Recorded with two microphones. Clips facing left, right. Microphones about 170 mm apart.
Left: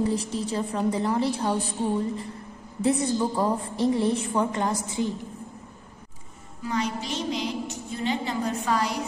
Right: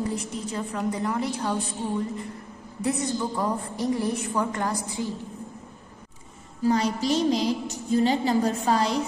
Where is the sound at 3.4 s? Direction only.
25° left (ahead or behind).